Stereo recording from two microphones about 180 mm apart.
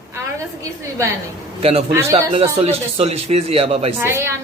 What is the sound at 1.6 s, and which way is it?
Speech, 35° right (ahead or behind).